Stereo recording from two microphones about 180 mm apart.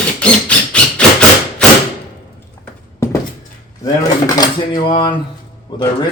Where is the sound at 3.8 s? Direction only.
20° left (ahead or behind).